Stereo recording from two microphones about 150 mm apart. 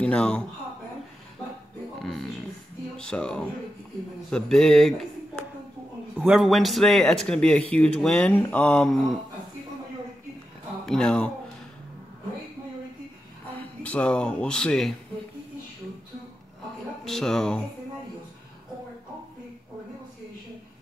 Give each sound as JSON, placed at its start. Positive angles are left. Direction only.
{"t": 0.0, "sound": "speech", "side_deg": 5}
{"t": 3.0, "sound": "speech", "side_deg": 5}
{"t": 6.1, "sound": "speech", "side_deg": -5}
{"t": 10.9, "sound": "speech", "side_deg": 5}
{"t": 13.6, "sound": "speech", "side_deg": 10}
{"t": 17.0, "sound": "speech", "side_deg": 5}